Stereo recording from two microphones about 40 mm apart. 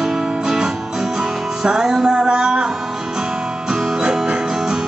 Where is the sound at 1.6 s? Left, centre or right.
Centre.